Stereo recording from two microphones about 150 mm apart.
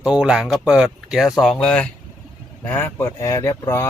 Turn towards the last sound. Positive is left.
turn(degrees=15)  # may be behind; listen again after turning